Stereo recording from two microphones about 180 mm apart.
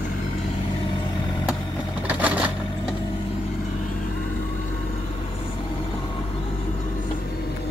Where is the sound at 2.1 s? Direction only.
10° right (ahead or behind).